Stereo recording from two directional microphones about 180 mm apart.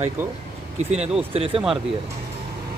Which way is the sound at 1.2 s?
30° right (ahead or behind).